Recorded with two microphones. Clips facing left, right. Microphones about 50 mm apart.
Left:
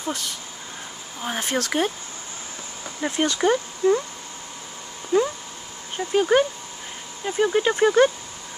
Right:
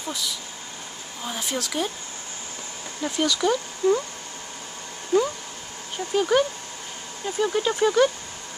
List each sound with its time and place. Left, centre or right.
0.1 s speech: left
3.0 s speech: left
3.8 s speech: left
5.1 s speech: centre
6.1 s speech: left